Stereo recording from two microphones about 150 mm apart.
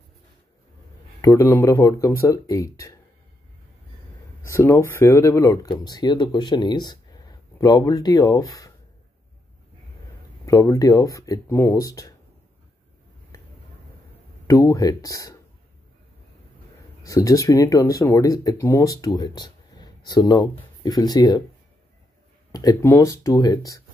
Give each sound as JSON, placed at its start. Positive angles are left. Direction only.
{"t": 1.2, "sound": "speech", "side_deg": 15}
{"t": 4.5, "sound": "speech", "side_deg": 15}
{"t": 10.4, "sound": "speech", "side_deg": 20}
{"t": 14.5, "sound": "speech", "side_deg": 20}
{"t": 17.0, "sound": "speech", "side_deg": 20}
{"t": 22.5, "sound": "speech", "side_deg": 25}